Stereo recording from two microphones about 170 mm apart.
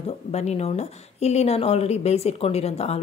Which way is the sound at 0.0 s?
40° left (ahead or behind).